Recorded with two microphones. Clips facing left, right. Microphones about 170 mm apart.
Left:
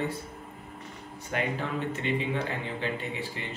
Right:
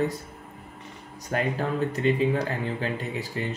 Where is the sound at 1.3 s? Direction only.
40° right (ahead or behind).